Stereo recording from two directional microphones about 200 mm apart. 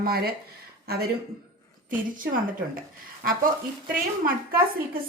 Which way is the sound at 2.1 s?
45° right (ahead or behind).